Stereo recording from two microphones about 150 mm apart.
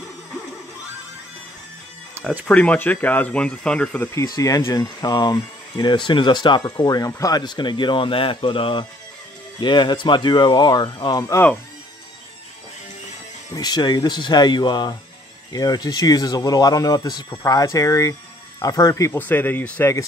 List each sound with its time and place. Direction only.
2.4 s speech: 10° left (ahead or behind)
4.1 s speech: 20° left (ahead or behind)
13.5 s speech: 25° left (ahead or behind); by 19.9 s 10° left (ahead or behind)